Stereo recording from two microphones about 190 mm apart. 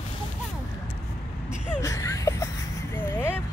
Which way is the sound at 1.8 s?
15° left (ahead or behind).